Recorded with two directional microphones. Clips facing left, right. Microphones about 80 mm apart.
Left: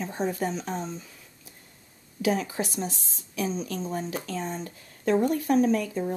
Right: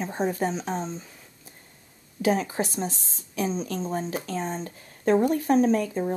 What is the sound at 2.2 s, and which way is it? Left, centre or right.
Speech, right.